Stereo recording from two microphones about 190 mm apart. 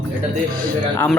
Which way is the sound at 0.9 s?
10° left (ahead or behind).